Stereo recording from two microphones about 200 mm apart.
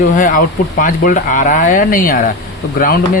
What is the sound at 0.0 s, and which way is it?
Speech, 40° left (ahead or behind).